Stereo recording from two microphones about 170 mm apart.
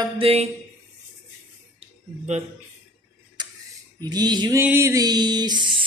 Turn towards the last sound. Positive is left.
turn(degrees=-25)  # may be behind; listen again after turning